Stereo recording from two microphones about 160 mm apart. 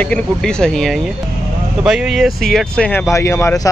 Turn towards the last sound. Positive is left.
turn(degrees=20)  # may be behind; listen again after turning